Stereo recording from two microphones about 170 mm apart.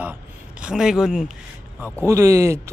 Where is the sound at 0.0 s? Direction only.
10° right (ahead or behind).